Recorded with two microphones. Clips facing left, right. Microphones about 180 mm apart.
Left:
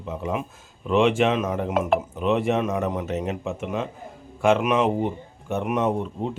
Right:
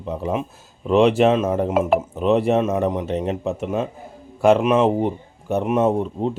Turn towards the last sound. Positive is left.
turn(degrees=-25)  # may be behind; listen again after turning